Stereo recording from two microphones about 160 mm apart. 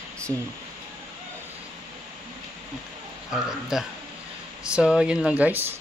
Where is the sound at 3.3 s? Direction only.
5° right (ahead or behind).